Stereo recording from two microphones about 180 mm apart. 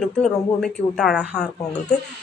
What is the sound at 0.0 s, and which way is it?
Speech, centre (ahead or behind).